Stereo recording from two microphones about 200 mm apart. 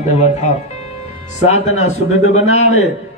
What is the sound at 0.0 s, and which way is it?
Speech, 35° left (ahead or behind).